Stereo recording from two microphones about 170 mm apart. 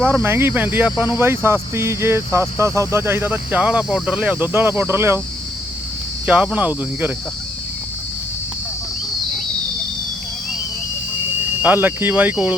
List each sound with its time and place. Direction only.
0.0 s speech: 10° right (ahead or behind)
6.2 s speech: 10° right (ahead or behind)
11.6 s speech: 10° right (ahead or behind)